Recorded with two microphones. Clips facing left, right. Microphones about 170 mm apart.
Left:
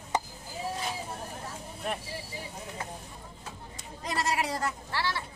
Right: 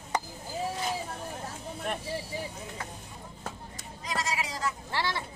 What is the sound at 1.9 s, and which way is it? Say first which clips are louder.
Speech: even; 5° left (ahead or behind).